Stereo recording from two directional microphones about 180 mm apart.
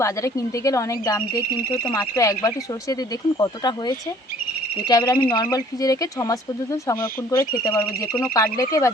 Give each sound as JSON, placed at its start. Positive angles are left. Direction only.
{"t": 0.0, "sound": "speech", "side_deg": 15}